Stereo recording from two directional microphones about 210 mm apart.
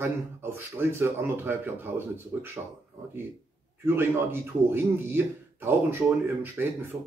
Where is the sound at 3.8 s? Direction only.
10° right (ahead or behind).